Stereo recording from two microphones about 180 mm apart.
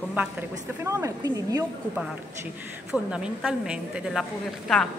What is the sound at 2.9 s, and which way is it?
A woman's voice, 5° right (ahead or behind).